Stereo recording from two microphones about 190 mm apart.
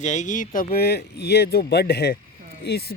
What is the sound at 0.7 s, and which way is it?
Speech, 55° left (ahead or behind).